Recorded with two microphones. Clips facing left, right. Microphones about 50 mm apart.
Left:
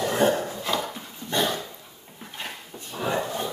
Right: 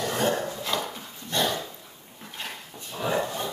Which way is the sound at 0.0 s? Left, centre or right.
Centre.